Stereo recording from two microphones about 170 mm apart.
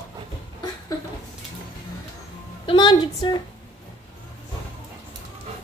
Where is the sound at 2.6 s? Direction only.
25° left (ahead or behind).